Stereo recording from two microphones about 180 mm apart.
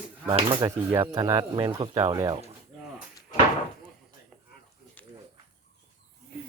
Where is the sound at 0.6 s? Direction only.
15° right (ahead or behind).